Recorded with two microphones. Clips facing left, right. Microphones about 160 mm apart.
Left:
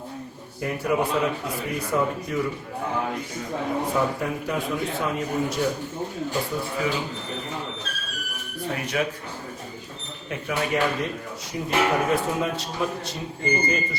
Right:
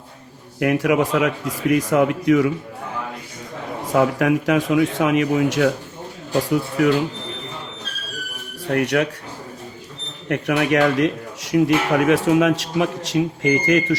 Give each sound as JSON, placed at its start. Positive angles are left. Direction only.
{"t": 0.6, "sound": "speech", "side_deg": -85}
{"t": 3.9, "sound": "speech", "side_deg": -90}
{"t": 8.6, "sound": "speech", "side_deg": -75}
{"t": 10.2, "sound": "speech", "side_deg": -80}